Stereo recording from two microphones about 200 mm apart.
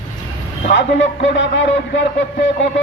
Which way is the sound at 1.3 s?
60° left (ahead or behind).